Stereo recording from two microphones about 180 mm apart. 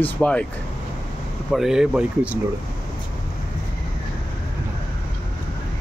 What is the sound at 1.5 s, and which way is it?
Speech, centre (ahead or behind).